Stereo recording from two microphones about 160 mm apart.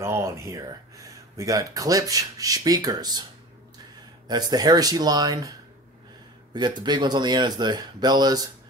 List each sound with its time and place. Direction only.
0.0 s speech: 15° right (ahead or behind)
4.3 s speech: 25° right (ahead or behind)